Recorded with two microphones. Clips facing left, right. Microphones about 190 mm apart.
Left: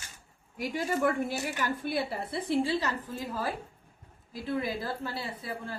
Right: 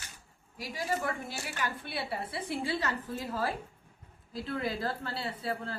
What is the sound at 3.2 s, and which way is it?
A woman's voice, 15° left (ahead or behind).